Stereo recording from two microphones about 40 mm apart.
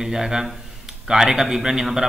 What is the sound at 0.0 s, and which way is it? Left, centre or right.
A man's voice, centre.